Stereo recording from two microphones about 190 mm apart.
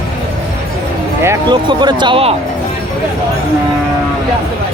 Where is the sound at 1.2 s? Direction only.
15° right (ahead or behind).